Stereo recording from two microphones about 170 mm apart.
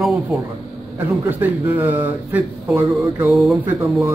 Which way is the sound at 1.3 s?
10° right (ahead or behind).